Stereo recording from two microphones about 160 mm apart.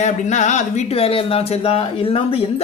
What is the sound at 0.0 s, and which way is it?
Speech, 50° left (ahead or behind).